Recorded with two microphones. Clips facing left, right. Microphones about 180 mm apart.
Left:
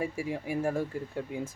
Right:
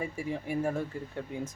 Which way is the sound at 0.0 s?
10° left (ahead or behind).